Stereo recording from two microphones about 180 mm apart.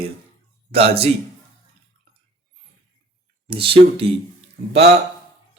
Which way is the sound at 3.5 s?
30° right (ahead or behind).